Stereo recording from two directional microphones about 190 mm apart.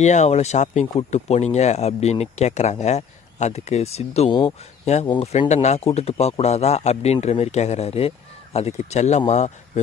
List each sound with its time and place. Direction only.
0.0 s speech: 40° left (ahead or behind)